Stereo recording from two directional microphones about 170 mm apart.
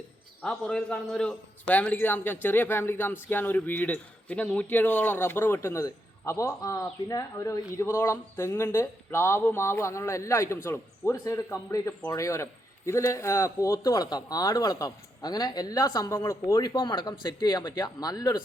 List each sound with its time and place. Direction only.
0.4 s a man's voice: 5° left (ahead or behind)